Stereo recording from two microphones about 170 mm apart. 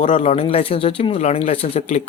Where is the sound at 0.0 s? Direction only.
45° left (ahead or behind).